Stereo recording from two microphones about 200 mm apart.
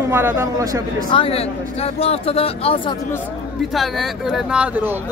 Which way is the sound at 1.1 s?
30° left (ahead or behind).